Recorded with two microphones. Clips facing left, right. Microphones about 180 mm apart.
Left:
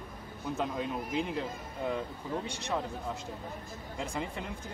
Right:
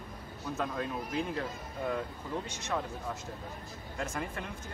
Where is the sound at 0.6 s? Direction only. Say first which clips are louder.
Left 1 dB; 15° left (ahead or behind).